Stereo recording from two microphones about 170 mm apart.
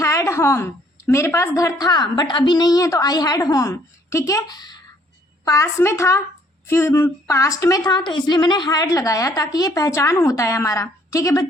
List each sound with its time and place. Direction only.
0.0 s a woman's voice: 20° left (ahead or behind)